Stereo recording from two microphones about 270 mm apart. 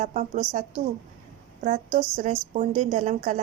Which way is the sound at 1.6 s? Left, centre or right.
Right.